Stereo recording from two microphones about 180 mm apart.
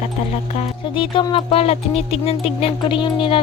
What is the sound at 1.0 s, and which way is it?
Speech, 30° left (ahead or behind).